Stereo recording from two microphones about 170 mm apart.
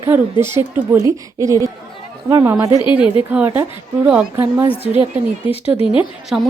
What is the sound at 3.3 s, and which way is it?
A woman's voice, 10° right (ahead or behind).